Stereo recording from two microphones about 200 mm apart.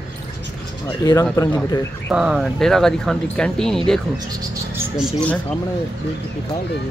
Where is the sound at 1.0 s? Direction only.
15° left (ahead or behind).